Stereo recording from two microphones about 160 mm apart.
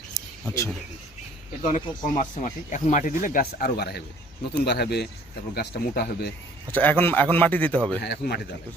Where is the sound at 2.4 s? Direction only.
50° left (ahead or behind); by 6.3 s 85° left.